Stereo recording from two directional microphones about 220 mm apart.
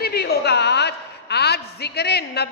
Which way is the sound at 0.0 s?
45° left (ahead or behind).